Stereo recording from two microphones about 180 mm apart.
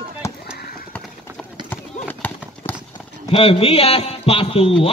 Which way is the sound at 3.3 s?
30° left (ahead or behind).